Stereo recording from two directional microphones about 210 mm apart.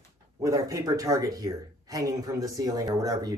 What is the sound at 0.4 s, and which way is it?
Speech, 15° right (ahead or behind).